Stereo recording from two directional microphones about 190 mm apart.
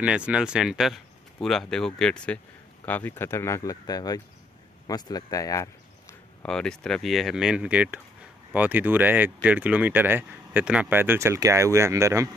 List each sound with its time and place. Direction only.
0.0 s speech: 5° right (ahead or behind); by 6.1 s 15° left (ahead or behind)
6.4 s speech: 5° left (ahead or behind); by 12.3 s 15° right (ahead or behind)